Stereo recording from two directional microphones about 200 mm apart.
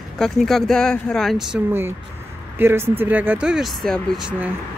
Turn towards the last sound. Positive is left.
turn(degrees=-5)  # may be behind; listen again after turning